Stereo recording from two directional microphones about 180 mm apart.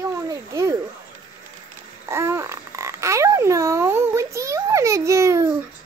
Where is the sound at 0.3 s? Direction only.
20° right (ahead or behind).